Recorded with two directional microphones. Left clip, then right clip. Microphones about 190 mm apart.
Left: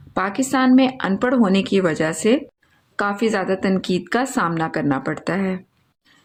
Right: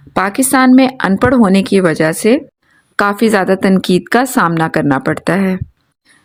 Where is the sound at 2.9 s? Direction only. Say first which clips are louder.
Right 9 dB; 50° right (ahead or behind).